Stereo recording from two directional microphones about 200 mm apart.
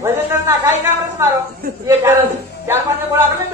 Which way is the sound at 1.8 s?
10° right (ahead or behind).